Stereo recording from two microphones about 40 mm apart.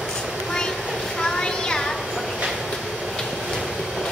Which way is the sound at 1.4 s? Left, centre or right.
Centre.